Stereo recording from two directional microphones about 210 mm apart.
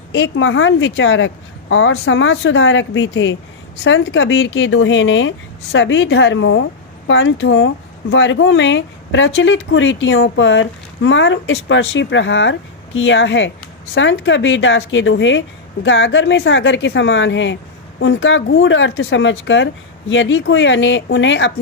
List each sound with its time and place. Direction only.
0.1 s speech: 65° left (ahead or behind)